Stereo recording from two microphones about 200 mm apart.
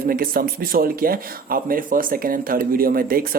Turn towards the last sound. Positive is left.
turn(degrees=-45)  # may be behind; listen again after turning